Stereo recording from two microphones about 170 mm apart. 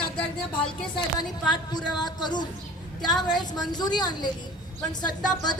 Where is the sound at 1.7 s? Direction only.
25° left (ahead or behind).